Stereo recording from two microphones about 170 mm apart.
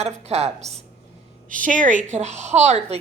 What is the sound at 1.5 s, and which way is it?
A woman's voice, 50° right (ahead or behind).